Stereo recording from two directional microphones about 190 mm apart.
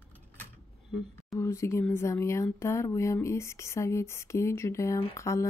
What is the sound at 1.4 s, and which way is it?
Speech, 15° left (ahead or behind).